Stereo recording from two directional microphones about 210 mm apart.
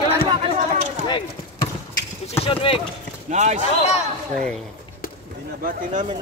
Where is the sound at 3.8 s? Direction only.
30° left (ahead or behind).